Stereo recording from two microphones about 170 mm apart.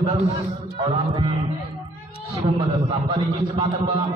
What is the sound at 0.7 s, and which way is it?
A man's voice, 30° right (ahead or behind).